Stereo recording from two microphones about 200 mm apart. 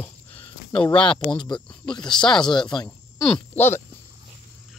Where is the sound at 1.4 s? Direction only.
25° left (ahead or behind).